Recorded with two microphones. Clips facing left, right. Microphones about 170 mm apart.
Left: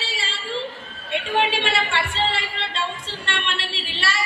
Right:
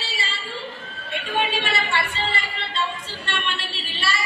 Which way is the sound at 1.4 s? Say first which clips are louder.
Even; 75° left (ahead or behind).